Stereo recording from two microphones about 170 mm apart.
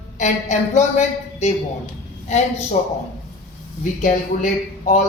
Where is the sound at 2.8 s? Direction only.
45° left (ahead or behind).